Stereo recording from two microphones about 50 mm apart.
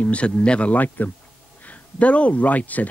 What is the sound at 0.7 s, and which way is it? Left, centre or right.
Speech, left.